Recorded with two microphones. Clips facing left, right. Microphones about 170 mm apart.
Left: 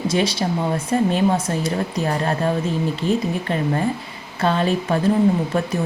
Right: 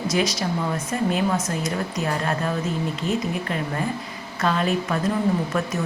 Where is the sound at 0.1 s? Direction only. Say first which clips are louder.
Left 1 dB; 30° left (ahead or behind).